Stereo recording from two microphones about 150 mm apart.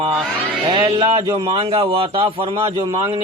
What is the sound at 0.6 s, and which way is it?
A man's voice, 30° right (ahead or behind).